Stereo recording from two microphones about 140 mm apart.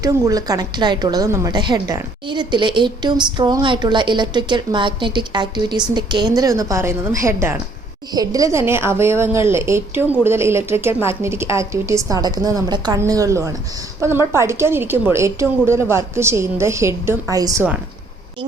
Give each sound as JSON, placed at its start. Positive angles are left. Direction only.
{"t": 0.0, "sound": "a woman's voice", "side_deg": -25}